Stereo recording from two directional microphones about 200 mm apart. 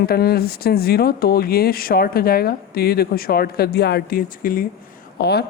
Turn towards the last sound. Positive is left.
turn(degrees=55)  # may be behind; listen again after turning